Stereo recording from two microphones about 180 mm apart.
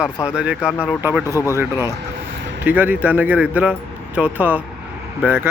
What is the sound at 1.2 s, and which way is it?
Speech, 15° left (ahead or behind).